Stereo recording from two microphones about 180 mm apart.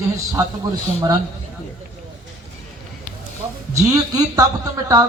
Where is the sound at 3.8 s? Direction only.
20° right (ahead or behind).